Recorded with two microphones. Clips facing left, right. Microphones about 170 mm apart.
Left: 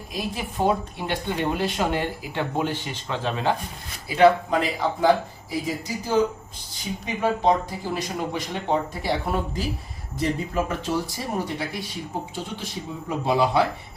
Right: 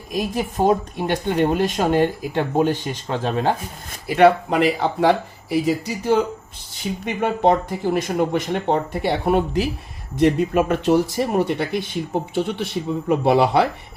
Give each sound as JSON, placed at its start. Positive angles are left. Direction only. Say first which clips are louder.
{"t": 0.1, "sound": "speech", "louder": "right 7 dB", "side_deg": -45}
{"t": 4.0, "sound": "speech", "louder": "right 3 dB", "side_deg": -65}